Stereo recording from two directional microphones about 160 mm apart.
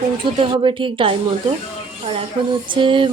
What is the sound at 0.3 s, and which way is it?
A woman's voice, 30° right (ahead or behind).